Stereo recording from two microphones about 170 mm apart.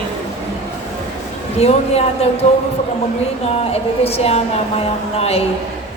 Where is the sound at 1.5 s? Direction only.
35° left (ahead or behind).